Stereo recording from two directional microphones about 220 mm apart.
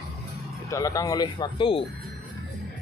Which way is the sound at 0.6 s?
15° left (ahead or behind).